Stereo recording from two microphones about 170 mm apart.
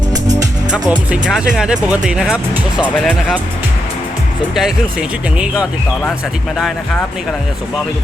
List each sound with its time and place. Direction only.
0.1 s music: 20° right (ahead or behind)
0.7 s speech: 5° right (ahead or behind)
4.5 s speech: 5° right (ahead or behind)